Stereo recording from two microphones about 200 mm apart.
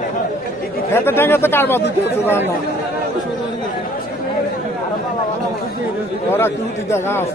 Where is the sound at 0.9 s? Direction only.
10° left (ahead or behind).